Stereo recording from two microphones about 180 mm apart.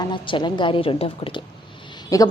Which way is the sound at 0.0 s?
25° left (ahead or behind).